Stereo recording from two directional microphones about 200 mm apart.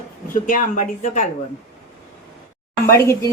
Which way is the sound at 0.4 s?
40° left (ahead or behind).